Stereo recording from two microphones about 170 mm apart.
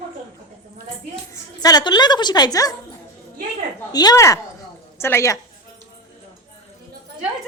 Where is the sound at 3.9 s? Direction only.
25° left (ahead or behind).